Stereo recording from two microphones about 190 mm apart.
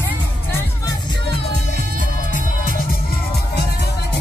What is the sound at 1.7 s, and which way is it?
Music, 40° left (ahead or behind).